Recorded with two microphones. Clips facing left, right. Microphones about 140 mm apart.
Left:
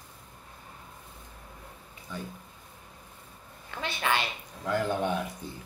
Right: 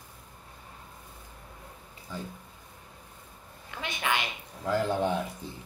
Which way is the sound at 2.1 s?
35° right (ahead or behind).